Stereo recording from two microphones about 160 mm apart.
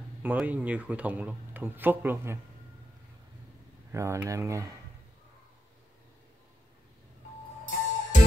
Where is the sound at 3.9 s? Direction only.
20° right (ahead or behind).